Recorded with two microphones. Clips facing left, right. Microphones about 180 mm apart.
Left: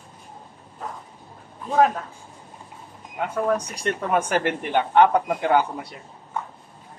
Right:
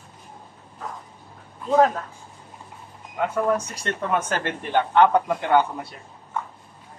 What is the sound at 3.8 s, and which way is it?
Speech, 15° left (ahead or behind).